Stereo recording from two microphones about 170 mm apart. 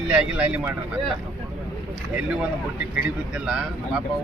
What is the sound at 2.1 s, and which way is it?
Speech, 5° right (ahead or behind).